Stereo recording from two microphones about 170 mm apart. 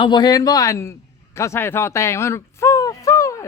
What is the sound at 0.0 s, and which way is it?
A man's voice, 25° left (ahead or behind).